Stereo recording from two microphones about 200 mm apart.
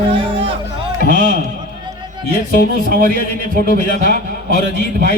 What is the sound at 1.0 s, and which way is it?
Speech, 45° left (ahead or behind).